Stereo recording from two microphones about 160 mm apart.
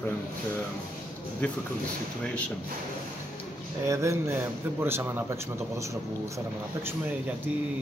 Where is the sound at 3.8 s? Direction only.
20° right (ahead or behind).